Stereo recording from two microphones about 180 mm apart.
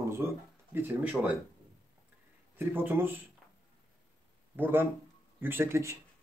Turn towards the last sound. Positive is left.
turn(degrees=-15)  # may be behind; listen again after turning